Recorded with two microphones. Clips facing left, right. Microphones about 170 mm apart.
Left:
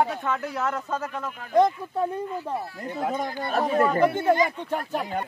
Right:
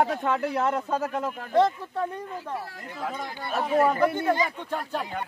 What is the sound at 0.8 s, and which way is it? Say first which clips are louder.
Speech: right 3 dB; 35° right (ahead or behind).